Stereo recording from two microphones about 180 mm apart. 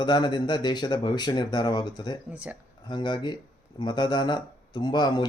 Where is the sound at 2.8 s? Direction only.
25° left (ahead or behind).